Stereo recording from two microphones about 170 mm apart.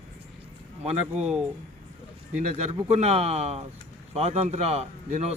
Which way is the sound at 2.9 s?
40° right (ahead or behind).